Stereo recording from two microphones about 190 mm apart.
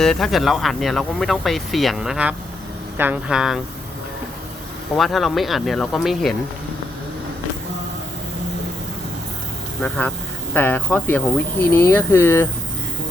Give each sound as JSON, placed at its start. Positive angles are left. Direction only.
{"t": 0.0, "sound": "speech", "side_deg": 0}
{"t": 4.9, "sound": "speech", "side_deg": 0}
{"t": 10.5, "sound": "speech", "side_deg": 10}